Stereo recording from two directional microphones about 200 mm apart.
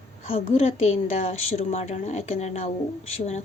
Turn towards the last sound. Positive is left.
turn(degrees=35)  # may be behind; listen again after turning